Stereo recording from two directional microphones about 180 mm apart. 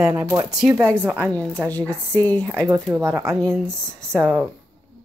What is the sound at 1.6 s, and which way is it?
Speech, 10° left (ahead or behind).